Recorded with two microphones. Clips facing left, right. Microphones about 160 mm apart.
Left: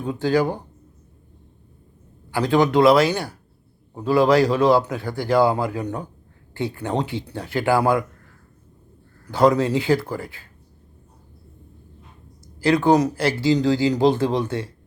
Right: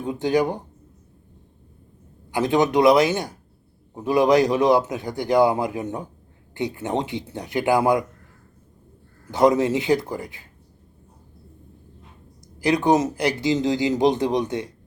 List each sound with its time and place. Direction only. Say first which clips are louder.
0.0 s a man's voice: left 1 dB; 20° right (ahead or behind)
2.3 s a man's voice: left 1 dB; 20° right (ahead or behind)
9.2 s a man's voice: even; 20° right (ahead or behind)
12.5 s a man's voice: left 2 dB; 20° right (ahead or behind)